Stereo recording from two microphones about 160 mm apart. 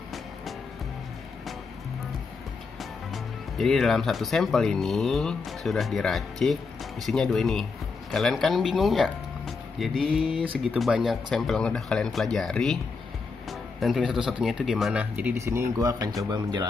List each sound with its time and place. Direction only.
2.8 s speech: centre (ahead or behind)
13.5 s music: centre (ahead or behind)
14.4 s speech: centre (ahead or behind); by 16.6 s 25° right (ahead or behind)